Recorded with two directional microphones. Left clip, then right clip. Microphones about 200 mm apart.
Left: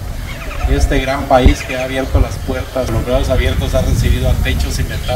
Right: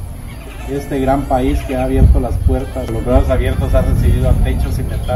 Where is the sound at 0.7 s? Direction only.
15° left (ahead or behind).